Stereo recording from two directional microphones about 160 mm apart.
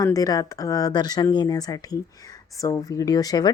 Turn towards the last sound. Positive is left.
turn(degrees=25)  # may be behind; listen again after turning